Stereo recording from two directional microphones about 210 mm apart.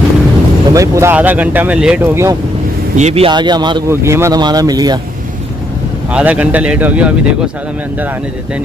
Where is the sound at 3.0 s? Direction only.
30° right (ahead or behind).